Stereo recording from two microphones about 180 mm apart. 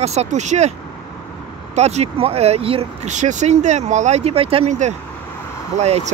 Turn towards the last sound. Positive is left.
turn(degrees=-40)  # may be behind; listen again after turning